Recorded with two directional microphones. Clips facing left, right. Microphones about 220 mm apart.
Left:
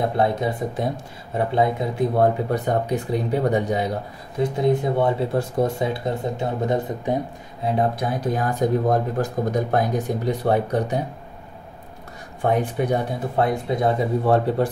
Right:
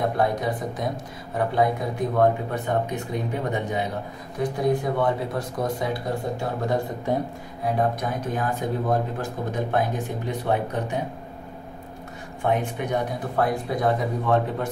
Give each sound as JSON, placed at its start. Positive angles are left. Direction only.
{"t": 0.2, "sound": "speech", "side_deg": 25}
{"t": 2.5, "sound": "speech", "side_deg": 40}
{"t": 4.4, "sound": "speech", "side_deg": 25}
{"t": 12.4, "sound": "speech", "side_deg": 35}
{"t": 14.2, "sound": "speech", "side_deg": 35}